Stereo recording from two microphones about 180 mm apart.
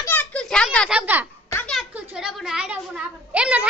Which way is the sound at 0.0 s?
10° left (ahead or behind).